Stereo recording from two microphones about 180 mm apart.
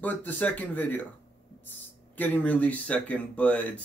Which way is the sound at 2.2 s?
10° left (ahead or behind).